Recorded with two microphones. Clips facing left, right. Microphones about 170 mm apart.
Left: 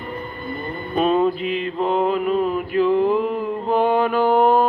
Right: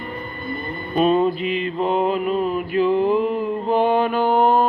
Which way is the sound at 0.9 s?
Centre (ahead or behind).